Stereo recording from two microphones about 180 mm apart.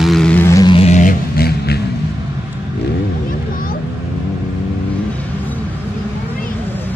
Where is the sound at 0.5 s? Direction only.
25° left (ahead or behind); by 1.8 s 60° left (ahead or behind).